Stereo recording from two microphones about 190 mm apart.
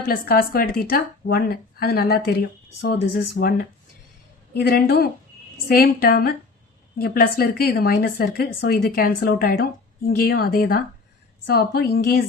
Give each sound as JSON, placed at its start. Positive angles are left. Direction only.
{"t": 0.1, "sound": "speech", "side_deg": 50}
{"t": 2.8, "sound": "speech", "side_deg": 70}
{"t": 4.5, "sound": "speech", "side_deg": 55}